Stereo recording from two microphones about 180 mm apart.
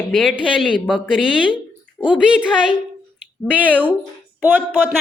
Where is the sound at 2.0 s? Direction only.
5° right (ahead or behind).